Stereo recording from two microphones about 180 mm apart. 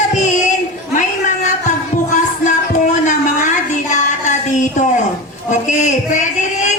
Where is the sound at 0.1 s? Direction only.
40° left (ahead or behind).